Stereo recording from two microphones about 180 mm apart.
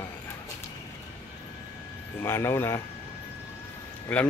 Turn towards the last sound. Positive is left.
turn(degrees=5)  # may be behind; listen again after turning